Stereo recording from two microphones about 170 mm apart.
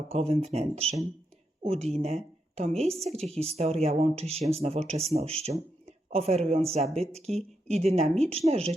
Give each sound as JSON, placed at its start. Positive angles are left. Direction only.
{"t": 0.1, "sound": "speech", "side_deg": -35}